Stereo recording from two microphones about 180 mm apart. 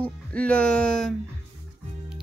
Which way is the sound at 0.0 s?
5° left (ahead or behind).